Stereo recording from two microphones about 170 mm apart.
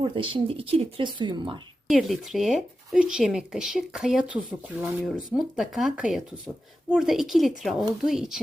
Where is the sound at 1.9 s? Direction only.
Centre (ahead or behind).